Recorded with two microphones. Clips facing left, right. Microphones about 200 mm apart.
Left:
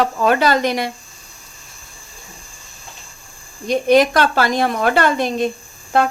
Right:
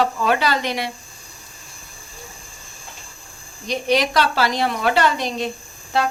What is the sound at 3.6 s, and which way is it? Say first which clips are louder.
Speech: left 7 dB; 50° left (ahead or behind).